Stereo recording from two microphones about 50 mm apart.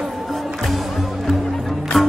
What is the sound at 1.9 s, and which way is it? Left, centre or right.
Music, centre.